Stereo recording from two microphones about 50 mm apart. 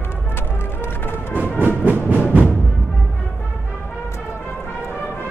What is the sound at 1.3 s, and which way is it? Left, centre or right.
Music, right.